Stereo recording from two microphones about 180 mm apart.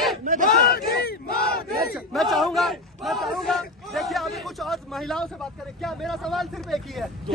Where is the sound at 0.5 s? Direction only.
60° left (ahead or behind).